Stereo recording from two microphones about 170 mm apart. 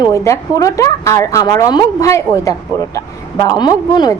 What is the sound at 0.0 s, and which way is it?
A woman's voice, 20° left (ahead or behind).